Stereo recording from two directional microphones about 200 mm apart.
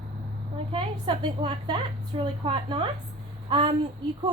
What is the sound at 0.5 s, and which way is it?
A woman's voice, 25° right (ahead or behind).